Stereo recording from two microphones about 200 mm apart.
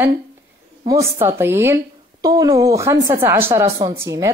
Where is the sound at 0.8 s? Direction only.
15° right (ahead or behind).